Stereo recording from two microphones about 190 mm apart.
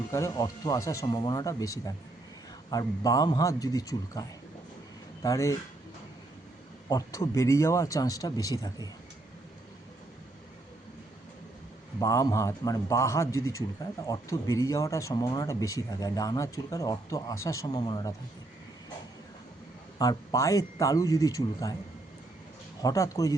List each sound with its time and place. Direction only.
0.1 s a man's voice: 15° left (ahead or behind)
6.8 s speech: 20° left (ahead or behind)
11.9 s speech: 20° left (ahead or behind)
20.0 s speech: 20° left (ahead or behind)
22.8 s speech: 20° left (ahead or behind)